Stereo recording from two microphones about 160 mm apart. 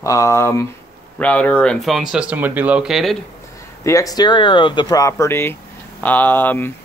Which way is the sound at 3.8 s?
20° left (ahead or behind).